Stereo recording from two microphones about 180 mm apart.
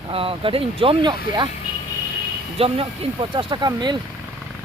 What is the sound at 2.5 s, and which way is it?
Speech, 30° right (ahead or behind).